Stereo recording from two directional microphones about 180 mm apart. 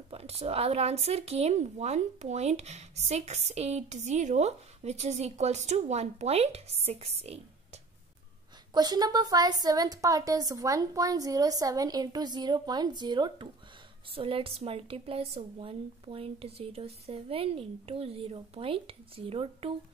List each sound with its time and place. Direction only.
0.1 s speech: 35° right (ahead or behind)
8.7 s a woman's voice: 20° right (ahead or behind)